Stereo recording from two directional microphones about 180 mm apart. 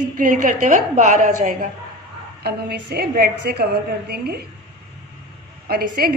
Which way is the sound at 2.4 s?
60° right (ahead or behind).